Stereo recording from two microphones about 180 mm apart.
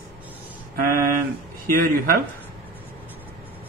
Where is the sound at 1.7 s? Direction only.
50° right (ahead or behind).